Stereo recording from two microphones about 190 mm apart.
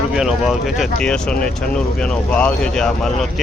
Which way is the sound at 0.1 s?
Centre (ahead or behind).